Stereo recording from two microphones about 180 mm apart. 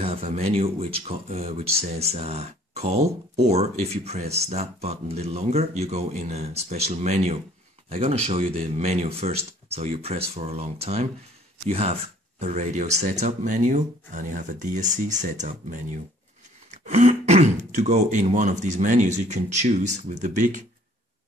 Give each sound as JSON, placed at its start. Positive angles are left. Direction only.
{"t": 0.0, "sound": "speech", "side_deg": -35}